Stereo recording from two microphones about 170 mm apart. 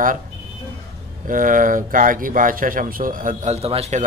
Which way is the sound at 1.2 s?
50° right (ahead or behind).